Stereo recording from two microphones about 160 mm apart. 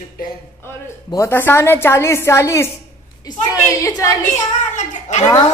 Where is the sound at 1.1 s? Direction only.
15° left (ahead or behind).